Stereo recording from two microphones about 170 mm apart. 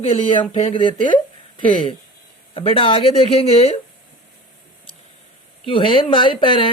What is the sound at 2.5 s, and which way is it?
Speech, 30° left (ahead or behind).